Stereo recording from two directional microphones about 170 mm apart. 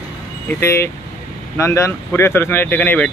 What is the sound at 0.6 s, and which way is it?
Speech, 15° left (ahead or behind).